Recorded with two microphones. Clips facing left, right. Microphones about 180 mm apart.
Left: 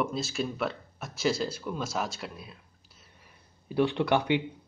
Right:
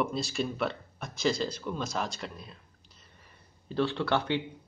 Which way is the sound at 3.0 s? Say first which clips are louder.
Left 1 dB; 10° left (ahead or behind).